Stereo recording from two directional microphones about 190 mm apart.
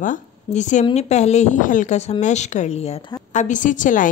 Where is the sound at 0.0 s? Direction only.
40° left (ahead or behind).